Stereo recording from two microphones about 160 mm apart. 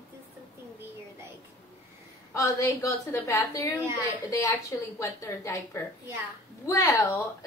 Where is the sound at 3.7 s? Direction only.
15° right (ahead or behind).